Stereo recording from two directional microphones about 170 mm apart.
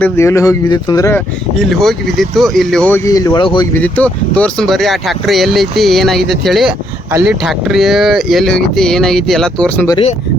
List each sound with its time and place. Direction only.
0.0 s speech: 15° left (ahead or behind)
1.5 s speech: centre (ahead or behind)
3.1 s speech: 20° left (ahead or behind)
3.8 s speech: 10° left (ahead or behind)